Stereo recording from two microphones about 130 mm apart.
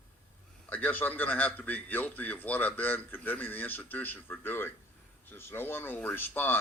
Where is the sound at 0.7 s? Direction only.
15° left (ahead or behind).